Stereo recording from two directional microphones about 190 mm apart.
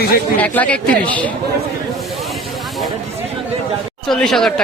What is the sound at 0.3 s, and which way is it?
Speech, 10° left (ahead or behind).